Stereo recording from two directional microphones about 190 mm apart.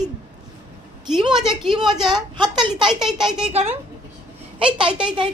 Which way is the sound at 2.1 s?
25° right (ahead or behind).